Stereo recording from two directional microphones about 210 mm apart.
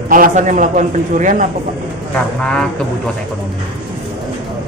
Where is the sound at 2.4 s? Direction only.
5° left (ahead or behind).